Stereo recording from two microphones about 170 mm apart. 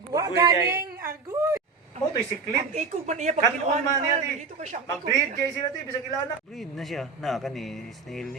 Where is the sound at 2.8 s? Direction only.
45° right (ahead or behind).